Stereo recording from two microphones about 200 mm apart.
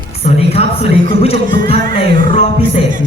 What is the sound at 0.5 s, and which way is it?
Speech, 30° left (ahead or behind).